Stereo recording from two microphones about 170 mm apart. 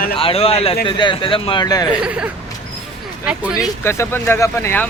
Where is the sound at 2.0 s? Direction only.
5° right (ahead or behind).